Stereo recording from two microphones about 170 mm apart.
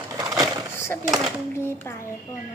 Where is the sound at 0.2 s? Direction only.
20° right (ahead or behind).